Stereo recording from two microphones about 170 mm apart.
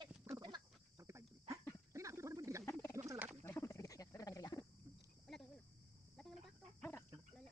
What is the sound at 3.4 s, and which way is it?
Wild animals, 15° left (ahead or behind).